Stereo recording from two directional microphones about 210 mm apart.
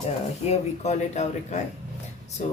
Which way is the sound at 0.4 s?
30° left (ahead or behind).